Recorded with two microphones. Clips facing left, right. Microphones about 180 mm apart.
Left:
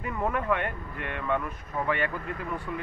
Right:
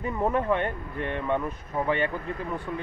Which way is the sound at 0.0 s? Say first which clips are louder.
Right 4 dB; 30° right (ahead or behind).